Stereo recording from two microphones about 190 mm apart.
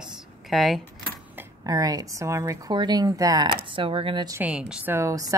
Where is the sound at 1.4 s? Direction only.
20° right (ahead or behind).